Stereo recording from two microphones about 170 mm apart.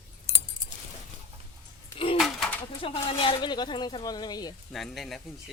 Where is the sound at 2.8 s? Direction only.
30° left (ahead or behind).